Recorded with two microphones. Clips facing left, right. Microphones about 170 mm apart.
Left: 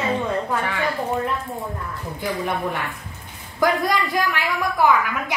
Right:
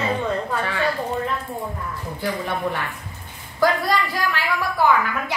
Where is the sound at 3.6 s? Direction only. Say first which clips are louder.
Even; 20° left (ahead or behind).